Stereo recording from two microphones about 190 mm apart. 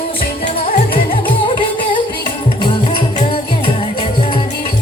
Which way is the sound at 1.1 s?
25° left (ahead or behind).